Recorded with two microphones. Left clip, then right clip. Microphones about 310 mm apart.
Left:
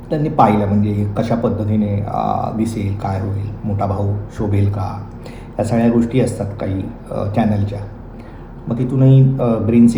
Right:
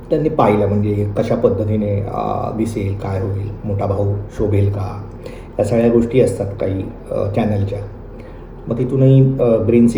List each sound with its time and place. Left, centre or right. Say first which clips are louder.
0.1 s a man's voice: even; centre